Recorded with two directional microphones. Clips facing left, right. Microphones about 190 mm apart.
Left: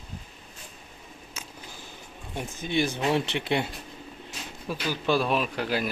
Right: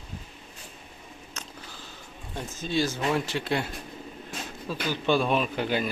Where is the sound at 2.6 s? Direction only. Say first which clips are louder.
Left 1 dB; 15° left (ahead or behind).